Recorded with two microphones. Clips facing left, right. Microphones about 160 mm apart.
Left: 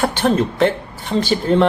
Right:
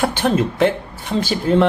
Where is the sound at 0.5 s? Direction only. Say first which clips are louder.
Even; 10° right (ahead or behind).